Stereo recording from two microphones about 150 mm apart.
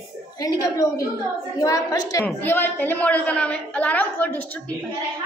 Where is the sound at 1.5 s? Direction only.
20° left (ahead or behind).